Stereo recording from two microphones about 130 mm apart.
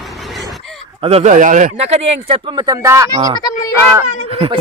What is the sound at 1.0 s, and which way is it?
Speech, 50° right (ahead or behind).